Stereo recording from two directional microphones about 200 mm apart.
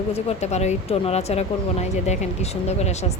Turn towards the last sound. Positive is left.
turn(degrees=35)  # may be behind; listen again after turning